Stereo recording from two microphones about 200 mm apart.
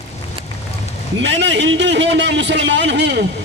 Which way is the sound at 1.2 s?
60° right (ahead or behind).